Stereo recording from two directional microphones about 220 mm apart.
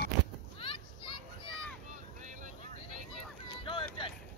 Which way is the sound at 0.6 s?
25° left (ahead or behind).